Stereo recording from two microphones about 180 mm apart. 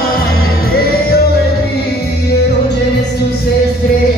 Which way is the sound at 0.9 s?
60° left (ahead or behind).